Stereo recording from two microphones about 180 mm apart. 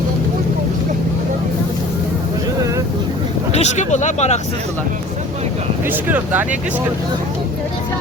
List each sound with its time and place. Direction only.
3.5 s speech: 40° left (ahead or behind)
5.9 s speech: 10° right (ahead or behind)